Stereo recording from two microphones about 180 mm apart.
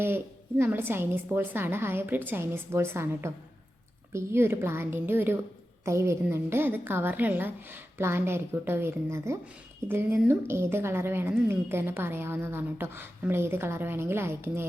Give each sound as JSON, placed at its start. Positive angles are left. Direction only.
{"t": 0.6, "sound": "a woman's voice", "side_deg": -10}